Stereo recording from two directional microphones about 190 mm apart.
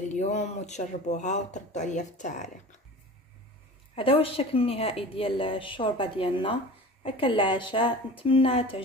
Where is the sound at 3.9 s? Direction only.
30° left (ahead or behind).